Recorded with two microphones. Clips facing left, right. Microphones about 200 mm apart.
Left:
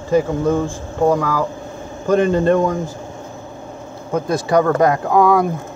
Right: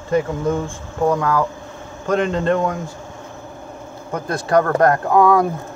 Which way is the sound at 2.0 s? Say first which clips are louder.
Left 4 dB; 10° left (ahead or behind).